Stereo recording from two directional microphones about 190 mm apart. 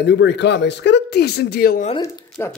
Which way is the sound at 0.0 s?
65° left (ahead or behind).